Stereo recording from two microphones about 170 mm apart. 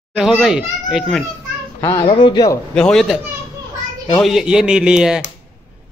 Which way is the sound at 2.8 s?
5° left (ahead or behind).